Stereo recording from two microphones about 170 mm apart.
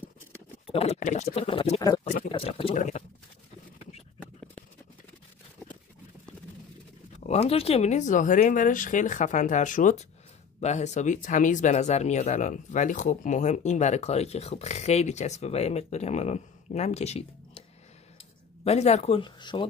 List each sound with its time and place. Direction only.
0.7 s speech: 40° left (ahead or behind)
2.7 s speech: 50° left (ahead or behind)
7.2 s speech: 35° left (ahead or behind)